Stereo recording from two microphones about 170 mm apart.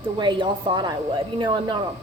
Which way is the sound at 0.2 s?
25° right (ahead or behind).